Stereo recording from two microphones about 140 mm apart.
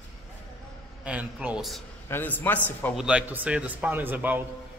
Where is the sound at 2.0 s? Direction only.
15° left (ahead or behind).